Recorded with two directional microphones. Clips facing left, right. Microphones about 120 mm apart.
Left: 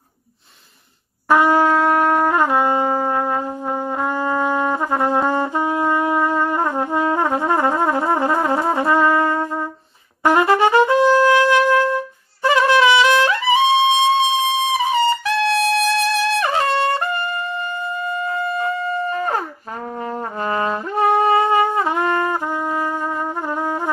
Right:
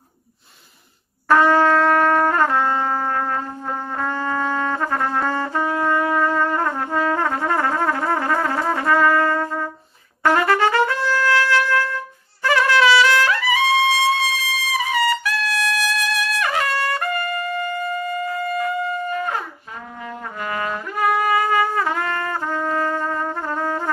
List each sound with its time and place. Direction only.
1.3 s brass instrument: 15° left (ahead or behind)
10.2 s trumpet: 20° left (ahead or behind)